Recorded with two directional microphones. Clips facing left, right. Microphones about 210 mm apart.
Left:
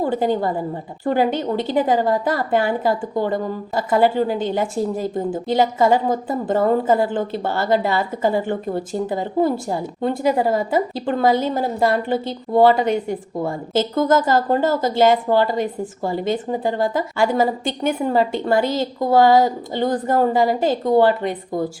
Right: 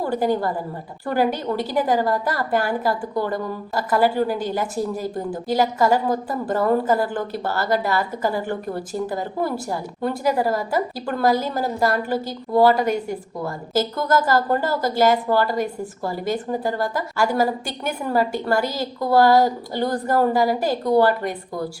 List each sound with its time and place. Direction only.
0.0 s a woman's voice: 20° left (ahead or behind)